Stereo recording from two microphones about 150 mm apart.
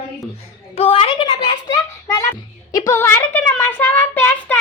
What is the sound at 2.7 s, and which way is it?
Child singing, 20° left (ahead or behind).